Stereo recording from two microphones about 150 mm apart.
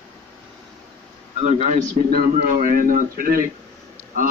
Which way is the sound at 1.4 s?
55° right (ahead or behind).